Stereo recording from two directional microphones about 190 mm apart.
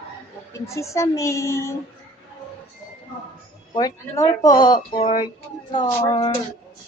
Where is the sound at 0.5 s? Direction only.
15° left (ahead or behind).